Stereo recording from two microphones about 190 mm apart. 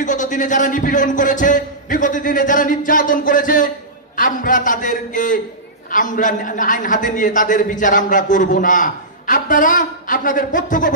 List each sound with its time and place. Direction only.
0.0 s a man's voice: 40° left (ahead or behind)